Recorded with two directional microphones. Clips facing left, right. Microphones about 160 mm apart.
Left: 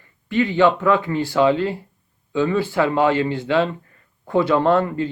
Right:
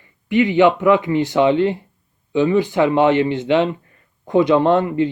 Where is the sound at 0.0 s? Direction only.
20° right (ahead or behind).